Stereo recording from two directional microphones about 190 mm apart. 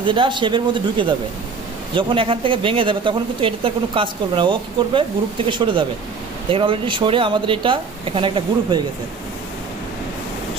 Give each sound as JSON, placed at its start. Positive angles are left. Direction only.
{"t": 0.0, "sound": "speech", "side_deg": -25}